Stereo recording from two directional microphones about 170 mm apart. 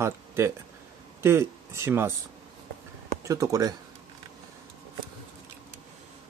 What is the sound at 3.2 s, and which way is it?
Speech, 20° right (ahead or behind).